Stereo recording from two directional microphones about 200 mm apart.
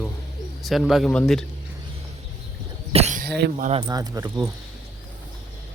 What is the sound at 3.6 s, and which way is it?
Speech, 30° right (ahead or behind).